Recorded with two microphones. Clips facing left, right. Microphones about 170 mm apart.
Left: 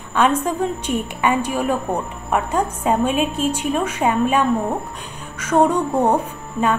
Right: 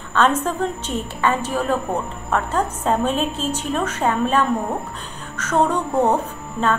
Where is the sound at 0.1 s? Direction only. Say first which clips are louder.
Left 1 dB; 10° left (ahead or behind).